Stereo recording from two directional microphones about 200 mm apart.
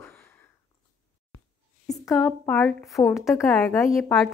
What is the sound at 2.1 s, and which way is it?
A woman's voice, 5° left (ahead or behind).